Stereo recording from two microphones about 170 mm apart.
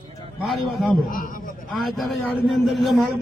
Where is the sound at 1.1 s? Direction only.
55° left (ahead or behind).